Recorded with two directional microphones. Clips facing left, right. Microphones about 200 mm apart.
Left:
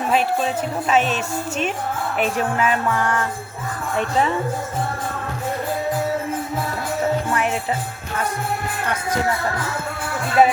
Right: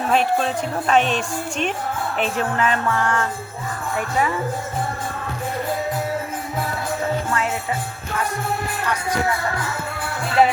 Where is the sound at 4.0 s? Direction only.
25° left (ahead or behind).